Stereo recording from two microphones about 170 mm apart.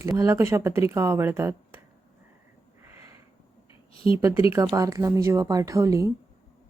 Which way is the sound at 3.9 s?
30° left (ahead or behind).